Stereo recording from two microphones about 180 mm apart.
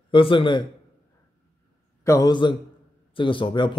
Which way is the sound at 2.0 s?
20° left (ahead or behind).